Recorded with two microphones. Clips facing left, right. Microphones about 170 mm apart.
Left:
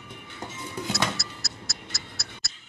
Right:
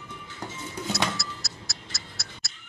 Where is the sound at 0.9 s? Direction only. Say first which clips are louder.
Even; centre (ahead or behind).